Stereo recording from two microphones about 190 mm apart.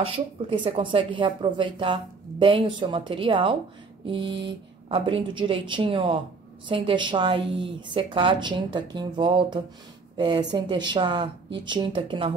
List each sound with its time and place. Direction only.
0.0 s a woman's voice: 30° right (ahead or behind)